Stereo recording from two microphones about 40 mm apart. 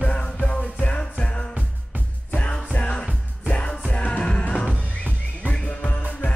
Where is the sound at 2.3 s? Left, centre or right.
Left.